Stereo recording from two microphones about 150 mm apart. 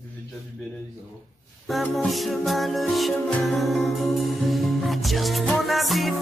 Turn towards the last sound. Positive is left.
turn(degrees=0)  # may be behind; listen again after turning